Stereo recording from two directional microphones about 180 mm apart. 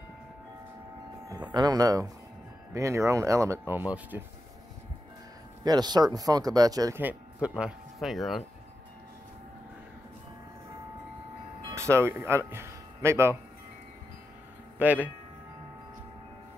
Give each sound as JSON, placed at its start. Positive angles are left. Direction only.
{"t": 1.5, "sound": "speech", "side_deg": -20}
{"t": 5.6, "sound": "speech", "side_deg": -20}
{"t": 11.7, "sound": "speech", "side_deg": -15}
{"t": 14.8, "sound": "speech", "side_deg": -10}